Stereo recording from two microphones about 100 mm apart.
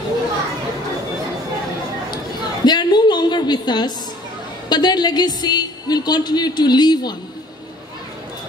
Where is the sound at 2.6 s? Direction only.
45° left (ahead or behind).